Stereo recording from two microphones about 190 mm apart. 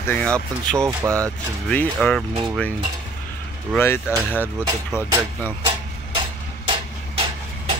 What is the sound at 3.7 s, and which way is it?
Speech, 15° left (ahead or behind).